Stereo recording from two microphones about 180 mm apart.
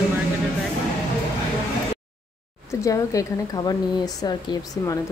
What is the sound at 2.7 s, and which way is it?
A woman's voice, 20° left (ahead or behind).